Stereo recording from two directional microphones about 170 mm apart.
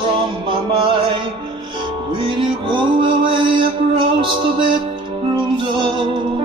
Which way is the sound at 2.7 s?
30° right (ahead or behind).